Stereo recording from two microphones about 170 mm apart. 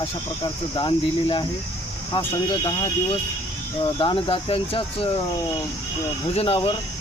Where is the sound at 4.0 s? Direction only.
30° left (ahead or behind).